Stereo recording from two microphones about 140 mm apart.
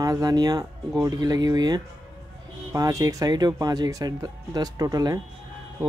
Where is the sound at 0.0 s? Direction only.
25° right (ahead or behind).